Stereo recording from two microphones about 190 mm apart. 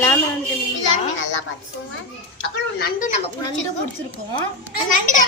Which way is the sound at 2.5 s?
55° left (ahead or behind).